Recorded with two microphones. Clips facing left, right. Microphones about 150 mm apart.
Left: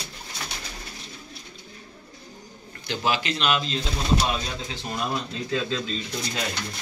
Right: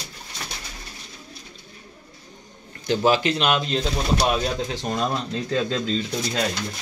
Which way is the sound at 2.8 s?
45° right (ahead or behind).